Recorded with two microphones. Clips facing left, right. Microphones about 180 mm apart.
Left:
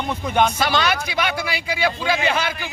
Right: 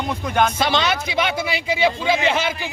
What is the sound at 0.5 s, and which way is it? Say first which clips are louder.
Speech: even; 25° right (ahead or behind).